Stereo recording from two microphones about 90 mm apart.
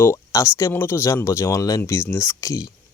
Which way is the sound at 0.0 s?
35° left (ahead or behind).